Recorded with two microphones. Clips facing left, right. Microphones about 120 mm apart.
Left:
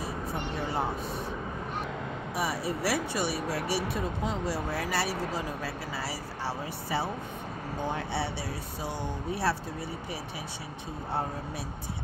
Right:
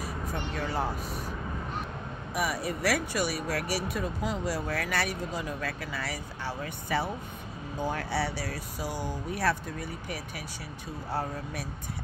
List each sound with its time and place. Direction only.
2.3 s speech: 30° left (ahead or behind)